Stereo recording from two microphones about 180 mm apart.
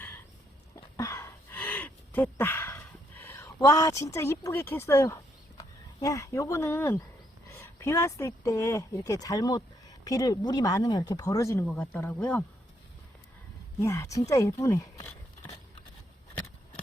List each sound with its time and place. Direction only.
0.8 s a sound: 15° left (ahead or behind)
6.0 s speech: 15° left (ahead or behind)
11.6 s speech: 5° left (ahead or behind)
13.8 s speech: 15° left (ahead or behind)